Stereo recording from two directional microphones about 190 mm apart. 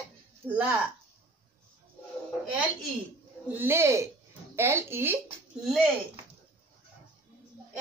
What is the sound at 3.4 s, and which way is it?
A woman's voice, 10° right (ahead or behind).